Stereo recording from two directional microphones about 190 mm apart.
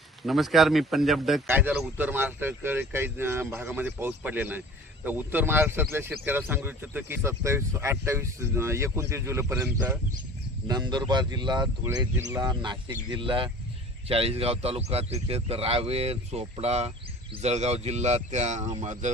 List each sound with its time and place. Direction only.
0.2 s speech: centre (ahead or behind); by 19.1 s 40° right (ahead or behind)